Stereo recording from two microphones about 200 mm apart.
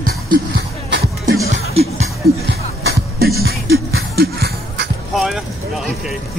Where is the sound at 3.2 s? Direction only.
50° right (ahead or behind).